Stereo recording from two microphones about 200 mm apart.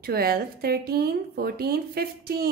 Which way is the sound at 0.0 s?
50° right (ahead or behind).